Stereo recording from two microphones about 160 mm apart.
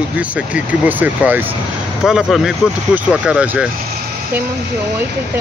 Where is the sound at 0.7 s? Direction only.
10° right (ahead or behind).